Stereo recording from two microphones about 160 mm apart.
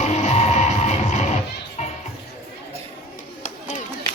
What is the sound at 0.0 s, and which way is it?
Music, 45° left (ahead or behind).